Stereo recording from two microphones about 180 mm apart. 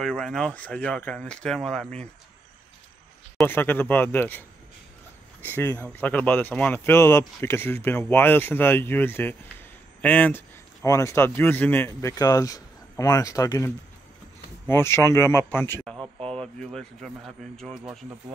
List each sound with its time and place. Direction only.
0.0 s speech: 5° left (ahead or behind)
3.4 s speech: 10° left (ahead or behind)
5.4 s speech: 10° left (ahead or behind)
14.7 s speech: 15° left (ahead or behind)
16.0 s a sound: 35° right (ahead or behind)
16.3 s speech: 5° left (ahead or behind)